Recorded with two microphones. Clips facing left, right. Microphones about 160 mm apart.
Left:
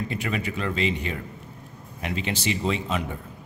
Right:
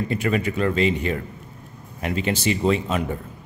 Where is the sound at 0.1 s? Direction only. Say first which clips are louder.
Right 6 dB; 45° right (ahead or behind).